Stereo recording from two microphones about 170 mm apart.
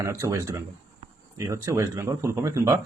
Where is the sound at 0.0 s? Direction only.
20° right (ahead or behind).